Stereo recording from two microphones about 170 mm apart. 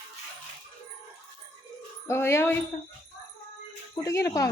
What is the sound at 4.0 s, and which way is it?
Speech, 20° left (ahead or behind).